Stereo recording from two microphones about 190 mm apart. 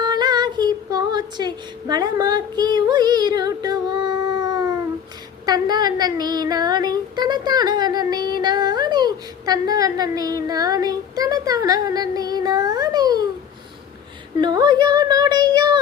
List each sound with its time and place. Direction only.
0.0 s music: 20° right (ahead or behind)
5.5 s a woman's voice: 20° right (ahead or behind)
14.4 s speech: 20° right (ahead or behind)